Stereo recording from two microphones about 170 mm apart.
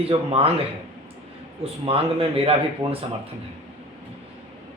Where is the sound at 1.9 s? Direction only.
35° right (ahead or behind).